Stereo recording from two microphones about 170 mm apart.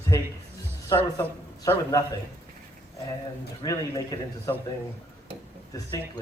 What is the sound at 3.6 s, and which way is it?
Speech, 20° left (ahead or behind).